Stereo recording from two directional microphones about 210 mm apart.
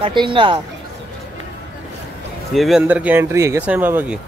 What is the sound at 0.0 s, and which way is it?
Speech, 25° right (ahead or behind).